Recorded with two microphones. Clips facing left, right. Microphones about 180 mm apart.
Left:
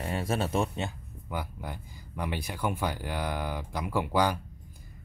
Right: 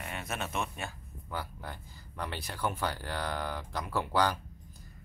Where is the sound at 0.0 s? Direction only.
30° left (ahead or behind).